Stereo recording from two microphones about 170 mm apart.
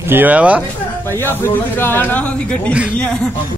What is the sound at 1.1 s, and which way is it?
A man's voice, 15° left (ahead or behind).